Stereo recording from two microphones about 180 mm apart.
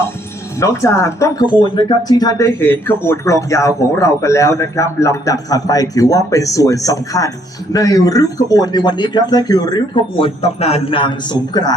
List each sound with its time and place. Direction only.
0.6 s speech: 15° left (ahead or behind)